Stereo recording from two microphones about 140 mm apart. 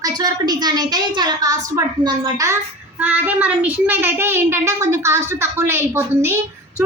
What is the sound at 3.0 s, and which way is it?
A woman's voice, 10° right (ahead or behind).